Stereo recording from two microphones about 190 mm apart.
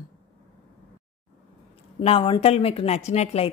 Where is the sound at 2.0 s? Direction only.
30° left (ahead or behind).